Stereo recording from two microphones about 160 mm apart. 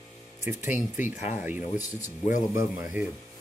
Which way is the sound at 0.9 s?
50° left (ahead or behind).